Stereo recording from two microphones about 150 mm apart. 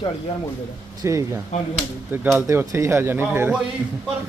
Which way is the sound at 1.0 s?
20° right (ahead or behind).